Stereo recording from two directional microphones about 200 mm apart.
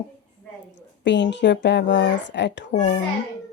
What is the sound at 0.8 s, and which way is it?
A woman's voice, 60° left (ahead or behind).